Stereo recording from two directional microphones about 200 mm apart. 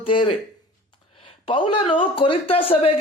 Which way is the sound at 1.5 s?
25° left (ahead or behind).